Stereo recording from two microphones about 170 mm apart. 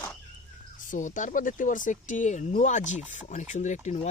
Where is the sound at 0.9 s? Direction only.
50° left (ahead or behind).